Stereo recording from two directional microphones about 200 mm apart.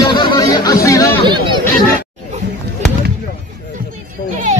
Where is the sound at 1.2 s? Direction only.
25° right (ahead or behind).